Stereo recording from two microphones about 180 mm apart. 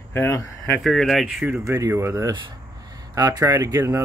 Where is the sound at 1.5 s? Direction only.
15° right (ahead or behind).